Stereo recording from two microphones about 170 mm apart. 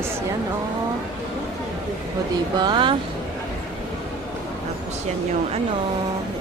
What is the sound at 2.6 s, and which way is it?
Speech, 25° right (ahead or behind).